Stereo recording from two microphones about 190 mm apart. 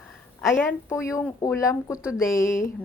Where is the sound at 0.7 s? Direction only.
15° left (ahead or behind).